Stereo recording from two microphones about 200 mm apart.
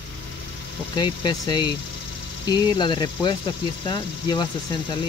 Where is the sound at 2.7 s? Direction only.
25° left (ahead or behind).